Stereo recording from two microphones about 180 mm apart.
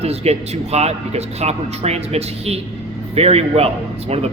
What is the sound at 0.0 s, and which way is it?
A man's voice, 35° right (ahead or behind).